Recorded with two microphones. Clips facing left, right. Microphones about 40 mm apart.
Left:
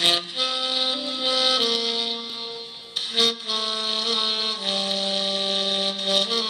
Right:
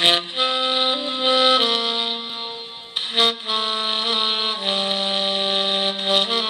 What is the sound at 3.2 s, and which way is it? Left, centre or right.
Music, right.